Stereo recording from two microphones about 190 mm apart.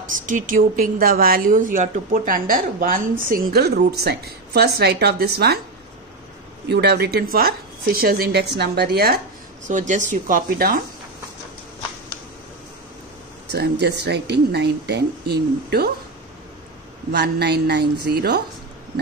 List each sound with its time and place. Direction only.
0.1 s a woman's voice: 45° right (ahead or behind)
6.7 s a woman's voice: 60° right (ahead or behind)
9.7 s speech: 40° right (ahead or behind)
13.5 s a woman's voice: 60° right (ahead or behind)
17.1 s a woman's voice: 60° right (ahead or behind)